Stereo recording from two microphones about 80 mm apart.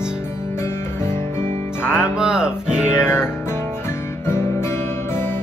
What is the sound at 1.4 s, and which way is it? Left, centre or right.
Music, left.